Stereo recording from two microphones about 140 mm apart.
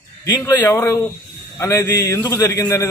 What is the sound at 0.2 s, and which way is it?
A man's voice, 15° left (ahead or behind).